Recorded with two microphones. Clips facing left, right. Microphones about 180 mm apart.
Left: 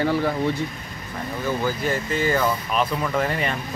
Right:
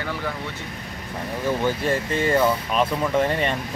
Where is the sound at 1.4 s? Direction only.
30° right (ahead or behind).